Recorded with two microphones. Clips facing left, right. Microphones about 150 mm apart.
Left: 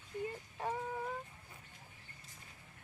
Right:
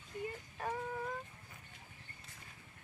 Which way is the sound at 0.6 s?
10° left (ahead or behind).